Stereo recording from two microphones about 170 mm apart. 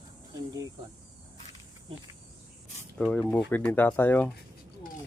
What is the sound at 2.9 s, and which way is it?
Speech, 5° left (ahead or behind).